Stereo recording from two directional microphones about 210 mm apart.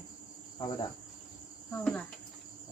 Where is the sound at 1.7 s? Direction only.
5° left (ahead or behind).